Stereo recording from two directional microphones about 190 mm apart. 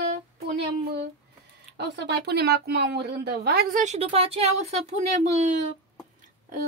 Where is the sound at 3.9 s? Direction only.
30° right (ahead or behind).